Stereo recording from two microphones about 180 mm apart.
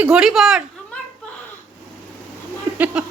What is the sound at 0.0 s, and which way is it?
Speech, 5° right (ahead or behind).